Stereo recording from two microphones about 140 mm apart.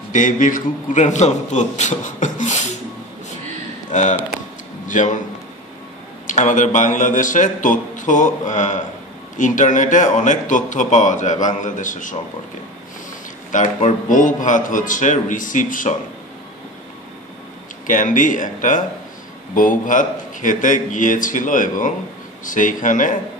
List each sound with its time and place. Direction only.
0.1 s speech: 65° left (ahead or behind)
3.9 s speech: 60° left (ahead or behind)
6.2 s a man's voice: 60° left (ahead or behind)
13.7 s a man's voice: 65° left (ahead or behind)
17.8 s a man's voice: 70° left (ahead or behind)